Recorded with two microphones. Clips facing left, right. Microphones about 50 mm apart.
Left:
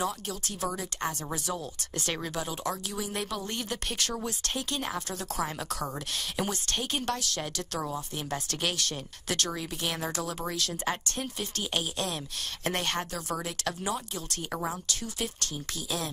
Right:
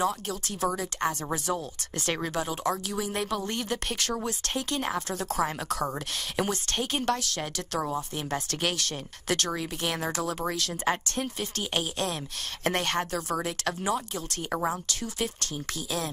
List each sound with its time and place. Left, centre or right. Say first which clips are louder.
0.0 s speech: right 4 dB; right